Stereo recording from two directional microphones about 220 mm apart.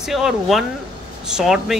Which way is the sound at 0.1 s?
Centre (ahead or behind).